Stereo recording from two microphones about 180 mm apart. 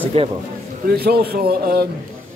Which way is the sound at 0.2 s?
30° right (ahead or behind).